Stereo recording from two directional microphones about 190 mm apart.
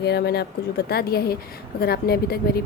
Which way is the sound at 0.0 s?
60° left (ahead or behind).